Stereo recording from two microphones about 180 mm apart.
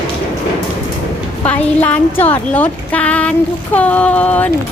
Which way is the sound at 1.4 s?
10° left (ahead or behind).